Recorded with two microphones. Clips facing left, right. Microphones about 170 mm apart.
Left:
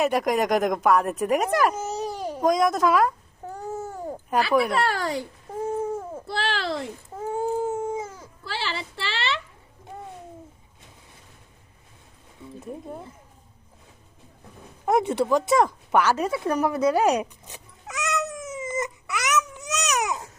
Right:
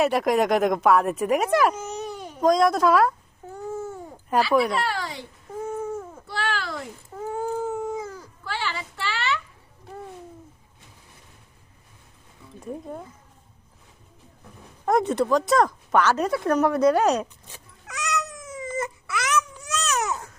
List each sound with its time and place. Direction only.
0.0 s a woman's voice: centre (ahead or behind)
1.7 s a sound: 35° left (ahead or behind)
2.4 s a woman's voice: 5° left (ahead or behind)
4.5 s a woman's voice: centre (ahead or behind)
4.9 s speech: 45° left (ahead or behind)
5.6 s a sound: 30° left (ahead or behind)
6.2 s baby cry: 35° left (ahead or behind)
14.8 s speech: 5° left (ahead or behind)
17.8 s a sound: 25° left (ahead or behind)